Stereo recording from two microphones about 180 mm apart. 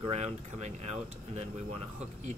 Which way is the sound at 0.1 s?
40° right (ahead or behind).